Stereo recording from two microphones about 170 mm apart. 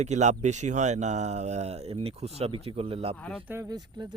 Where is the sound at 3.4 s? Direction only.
10° right (ahead or behind).